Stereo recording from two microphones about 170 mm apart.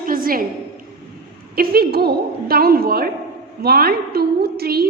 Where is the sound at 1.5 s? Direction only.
65° right (ahead or behind).